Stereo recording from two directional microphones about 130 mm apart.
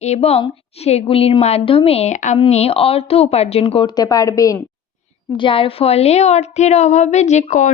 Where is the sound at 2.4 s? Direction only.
50° left (ahead or behind); by 4.5 s 25° left (ahead or behind).